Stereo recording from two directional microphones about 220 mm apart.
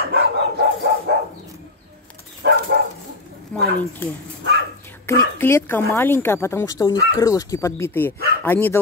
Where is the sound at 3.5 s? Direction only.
5° left (ahead or behind).